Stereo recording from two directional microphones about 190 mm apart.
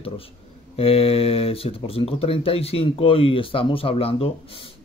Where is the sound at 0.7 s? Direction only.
30° left (ahead or behind).